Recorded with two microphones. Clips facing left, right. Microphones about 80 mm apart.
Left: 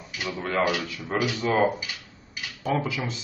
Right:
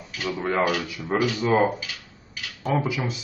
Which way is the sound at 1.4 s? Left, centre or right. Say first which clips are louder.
Right 1 dB; centre.